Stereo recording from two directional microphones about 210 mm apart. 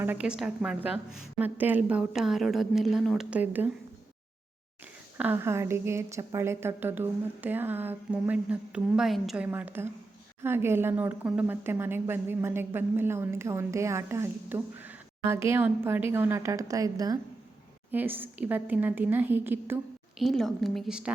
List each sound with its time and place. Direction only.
0.0 s a woman's voice: 5° right (ahead or behind)
5.1 s speech: 10° right (ahead or behind)